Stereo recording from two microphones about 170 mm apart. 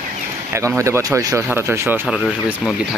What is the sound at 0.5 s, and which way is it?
Speech, 15° right (ahead or behind).